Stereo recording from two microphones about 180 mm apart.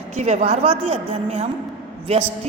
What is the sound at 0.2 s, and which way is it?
A woman's voice, 35° right (ahead or behind).